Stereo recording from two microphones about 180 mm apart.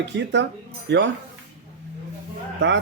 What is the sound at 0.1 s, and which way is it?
Speech, 85° right.